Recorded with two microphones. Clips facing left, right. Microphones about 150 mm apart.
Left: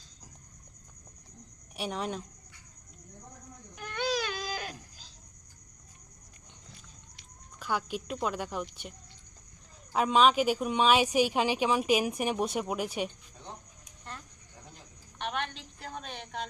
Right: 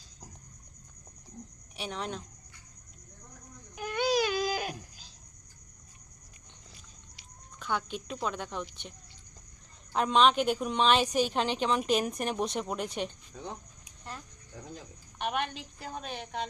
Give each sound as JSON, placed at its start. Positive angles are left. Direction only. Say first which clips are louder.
{"t": 1.7, "sound": "speech", "louder": "left 3 dB", "side_deg": 5}
{"t": 3.8, "sound": "baby cry", "louder": "right 4 dB", "side_deg": -10}
{"t": 6.7, "sound": "a sound", "louder": "left 2 dB", "side_deg": -5}
{"t": 8.6, "sound": "a woman's voice", "louder": "left 2 dB", "side_deg": 5}
{"t": 13.4, "sound": "a sound", "louder": "right 7 dB", "side_deg": -90}
{"t": 15.2, "sound": "a woman's voice", "louder": "right 3 dB", "side_deg": -10}